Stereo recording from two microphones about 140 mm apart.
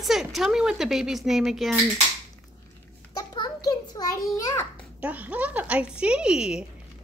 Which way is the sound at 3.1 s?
25° left (ahead or behind).